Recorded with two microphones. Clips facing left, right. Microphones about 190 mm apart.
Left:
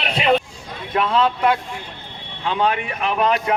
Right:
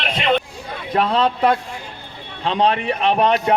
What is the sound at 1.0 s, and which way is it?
A man's voice, 35° right (ahead or behind).